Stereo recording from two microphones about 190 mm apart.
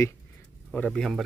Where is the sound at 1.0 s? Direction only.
Centre (ahead or behind).